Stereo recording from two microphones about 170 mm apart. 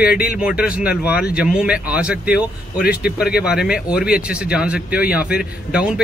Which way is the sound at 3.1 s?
5° right (ahead or behind).